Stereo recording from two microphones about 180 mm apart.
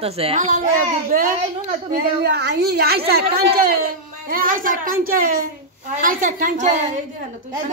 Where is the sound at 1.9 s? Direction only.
60° right (ahead or behind).